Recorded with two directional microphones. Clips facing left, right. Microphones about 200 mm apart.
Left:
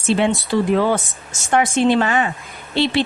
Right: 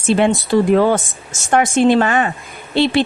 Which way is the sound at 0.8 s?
45° right (ahead or behind).